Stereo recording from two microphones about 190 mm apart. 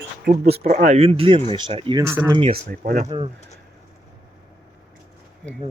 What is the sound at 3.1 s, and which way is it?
Speech, 30° right (ahead or behind).